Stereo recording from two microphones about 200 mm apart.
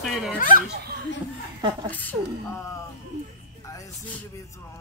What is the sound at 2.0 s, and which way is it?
Music, 10° left (ahead or behind).